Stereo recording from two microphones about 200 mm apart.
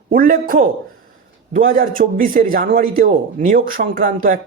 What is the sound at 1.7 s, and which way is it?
A man's voice, 45° right (ahead or behind).